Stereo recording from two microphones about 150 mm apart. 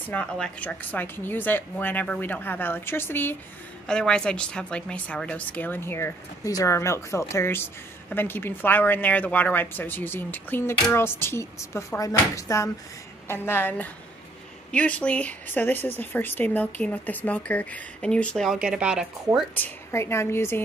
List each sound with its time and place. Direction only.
0.1 s a woman's voice: 5° left (ahead or behind)
19.5 s a woman's voice: 15° left (ahead or behind)